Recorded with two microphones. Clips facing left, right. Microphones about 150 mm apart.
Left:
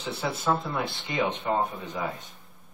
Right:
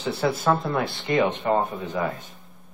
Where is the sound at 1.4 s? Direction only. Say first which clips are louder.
Right 4 dB; 55° right (ahead or behind).